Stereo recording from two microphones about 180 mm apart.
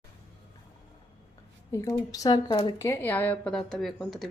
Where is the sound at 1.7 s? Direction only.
20° left (ahead or behind).